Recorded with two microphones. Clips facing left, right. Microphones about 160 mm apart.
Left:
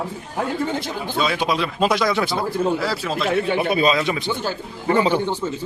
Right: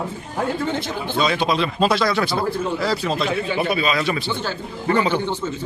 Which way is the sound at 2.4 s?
5° left (ahead or behind).